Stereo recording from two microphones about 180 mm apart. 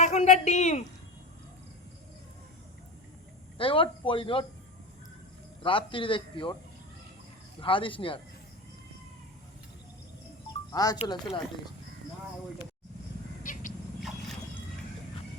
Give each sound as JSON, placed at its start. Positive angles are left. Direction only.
{"t": 0.0, "sound": "speech", "side_deg": 40}
{"t": 3.6, "sound": "a man's voice", "side_deg": 30}
{"t": 5.6, "sound": "a man's voice", "side_deg": 30}
{"t": 7.6, "sound": "a man's voice", "side_deg": 30}
{"t": 10.7, "sound": "speech", "side_deg": 20}
{"t": 10.9, "sound": "speech", "side_deg": 35}
{"t": 13.4, "sound": "a sound", "side_deg": 45}